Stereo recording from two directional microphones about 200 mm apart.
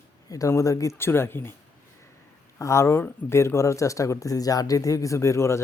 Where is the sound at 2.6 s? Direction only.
15° left (ahead or behind).